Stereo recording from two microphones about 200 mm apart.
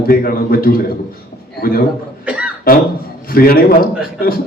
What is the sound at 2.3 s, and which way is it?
Cough, 5° right (ahead or behind).